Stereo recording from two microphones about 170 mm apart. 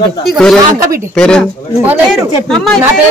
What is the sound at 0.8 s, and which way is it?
Speech, 15° right (ahead or behind).